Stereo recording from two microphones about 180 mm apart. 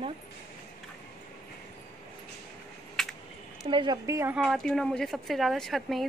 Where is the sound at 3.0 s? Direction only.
Centre (ahead or behind).